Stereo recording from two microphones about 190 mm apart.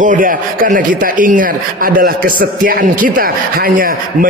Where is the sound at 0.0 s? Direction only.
45° right (ahead or behind).